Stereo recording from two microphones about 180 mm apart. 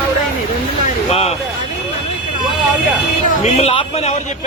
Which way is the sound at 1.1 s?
35° left (ahead or behind).